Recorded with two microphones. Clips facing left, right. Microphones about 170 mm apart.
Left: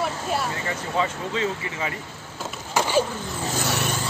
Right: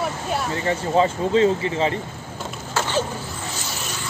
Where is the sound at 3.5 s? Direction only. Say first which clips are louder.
Left 6 dB; 60° left (ahead or behind).